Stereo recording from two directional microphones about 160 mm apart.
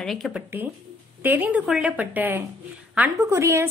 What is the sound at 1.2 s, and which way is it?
A woman's voice, 10° right (ahead or behind).